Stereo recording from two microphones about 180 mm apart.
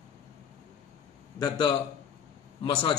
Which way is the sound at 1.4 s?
20° left (ahead or behind).